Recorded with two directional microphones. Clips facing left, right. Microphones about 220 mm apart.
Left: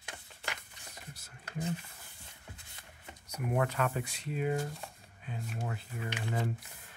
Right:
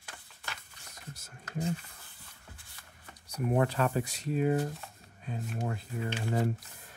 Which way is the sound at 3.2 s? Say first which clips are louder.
Right 4 dB; 30° right (ahead or behind).